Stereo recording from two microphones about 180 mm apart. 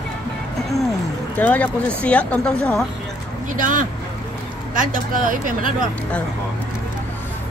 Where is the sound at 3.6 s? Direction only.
50° right (ahead or behind).